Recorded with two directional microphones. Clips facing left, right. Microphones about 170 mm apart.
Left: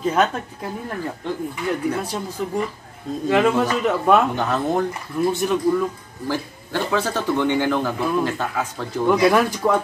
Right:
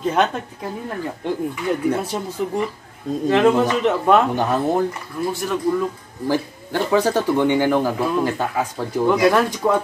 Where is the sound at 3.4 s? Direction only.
15° right (ahead or behind).